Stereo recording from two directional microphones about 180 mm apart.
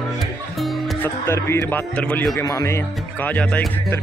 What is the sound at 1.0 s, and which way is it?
Speech, 15° left (ahead or behind).